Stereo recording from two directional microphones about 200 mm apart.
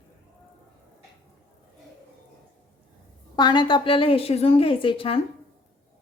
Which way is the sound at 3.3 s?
20° left (ahead or behind).